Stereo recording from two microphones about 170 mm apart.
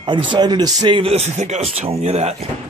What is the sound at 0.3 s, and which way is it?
Speech, 25° right (ahead or behind).